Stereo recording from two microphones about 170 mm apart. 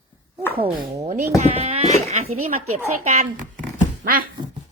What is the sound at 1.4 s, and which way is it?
Speech, 40° right (ahead or behind).